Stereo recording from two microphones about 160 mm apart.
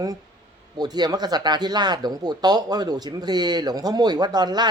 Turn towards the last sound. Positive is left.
turn(degrees=-25)  # may be behind; listen again after turning